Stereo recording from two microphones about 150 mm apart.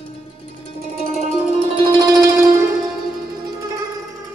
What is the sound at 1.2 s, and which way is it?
Music, 55° right (ahead or behind).